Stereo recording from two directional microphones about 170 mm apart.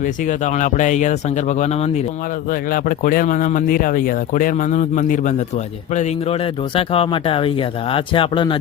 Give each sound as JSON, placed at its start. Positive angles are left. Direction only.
{"t": 0.0, "sound": "speech", "side_deg": 45}
{"t": 2.5, "sound": "speech", "side_deg": 55}